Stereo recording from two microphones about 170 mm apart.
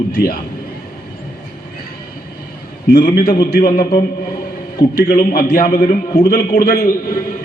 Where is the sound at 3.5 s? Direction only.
60° left (ahead or behind).